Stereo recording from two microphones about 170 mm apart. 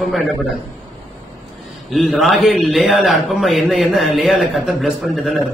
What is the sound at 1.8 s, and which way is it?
A man's voice, centre (ahead or behind).